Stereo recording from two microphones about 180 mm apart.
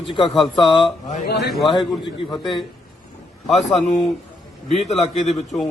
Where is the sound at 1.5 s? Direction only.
Centre (ahead or behind).